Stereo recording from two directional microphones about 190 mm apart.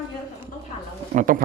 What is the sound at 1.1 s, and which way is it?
Speech, 45° right (ahead or behind).